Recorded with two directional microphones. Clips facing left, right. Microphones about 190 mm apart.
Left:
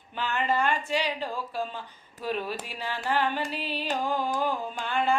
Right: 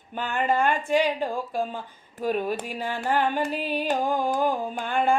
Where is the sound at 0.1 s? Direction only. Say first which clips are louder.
Right 3 dB; 50° right (ahead or behind).